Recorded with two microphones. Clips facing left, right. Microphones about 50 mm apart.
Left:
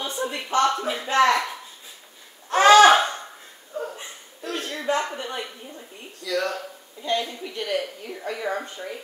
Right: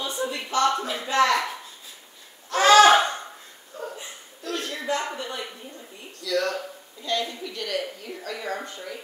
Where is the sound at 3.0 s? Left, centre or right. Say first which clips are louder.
Even; centre.